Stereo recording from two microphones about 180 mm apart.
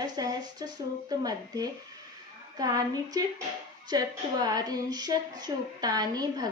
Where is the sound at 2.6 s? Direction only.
20° right (ahead or behind).